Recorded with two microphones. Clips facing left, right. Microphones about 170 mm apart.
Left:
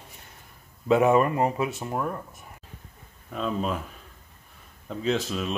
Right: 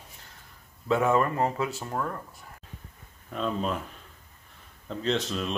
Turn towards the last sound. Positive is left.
turn(degrees=5)  # may be behind; listen again after turning